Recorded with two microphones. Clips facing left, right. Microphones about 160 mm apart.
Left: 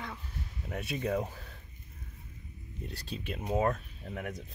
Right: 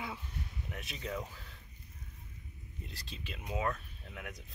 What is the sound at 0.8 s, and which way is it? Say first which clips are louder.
Speech: left 9 dB; 55° left (ahead or behind).